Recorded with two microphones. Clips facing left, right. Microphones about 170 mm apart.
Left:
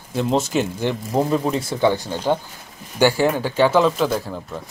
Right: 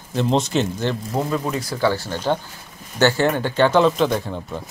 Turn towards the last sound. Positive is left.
turn(degrees=5)  # may be behind; listen again after turning